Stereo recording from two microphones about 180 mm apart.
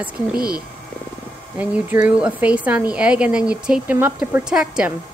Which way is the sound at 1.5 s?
10° right (ahead or behind).